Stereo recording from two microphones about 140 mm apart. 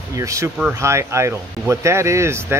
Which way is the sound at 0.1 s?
25° right (ahead or behind).